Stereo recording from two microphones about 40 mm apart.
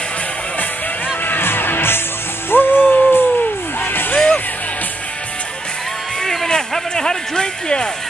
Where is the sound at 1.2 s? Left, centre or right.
Left.